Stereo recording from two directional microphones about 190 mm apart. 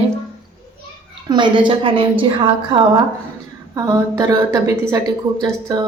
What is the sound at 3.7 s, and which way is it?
A woman's voice, 15° right (ahead or behind).